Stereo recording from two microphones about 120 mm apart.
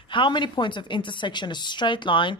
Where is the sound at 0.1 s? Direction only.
40° left (ahead or behind).